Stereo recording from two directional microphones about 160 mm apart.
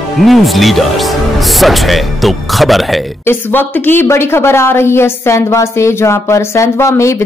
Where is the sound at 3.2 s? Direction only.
10° left (ahead or behind).